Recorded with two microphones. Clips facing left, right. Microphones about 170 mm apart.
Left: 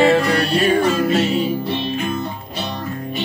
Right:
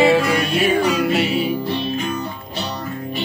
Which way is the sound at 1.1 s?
40° left (ahead or behind).